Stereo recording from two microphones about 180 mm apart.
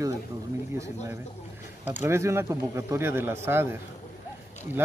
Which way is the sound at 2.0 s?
15° right (ahead or behind).